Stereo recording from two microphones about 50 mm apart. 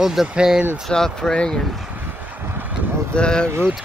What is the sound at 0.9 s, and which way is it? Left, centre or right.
Speech, centre.